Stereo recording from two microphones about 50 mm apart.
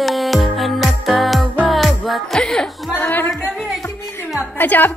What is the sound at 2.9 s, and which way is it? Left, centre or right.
Music, left.